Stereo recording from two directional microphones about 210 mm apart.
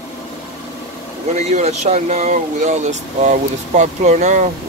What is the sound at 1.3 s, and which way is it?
Speech, 35° right (ahead or behind).